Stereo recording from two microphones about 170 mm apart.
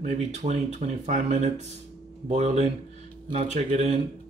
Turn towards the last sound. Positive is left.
turn(degrees=-40)  # may be behind; listen again after turning